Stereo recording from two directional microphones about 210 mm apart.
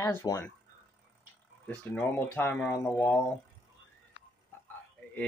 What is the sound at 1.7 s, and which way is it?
Speech, 5° left (ahead or behind).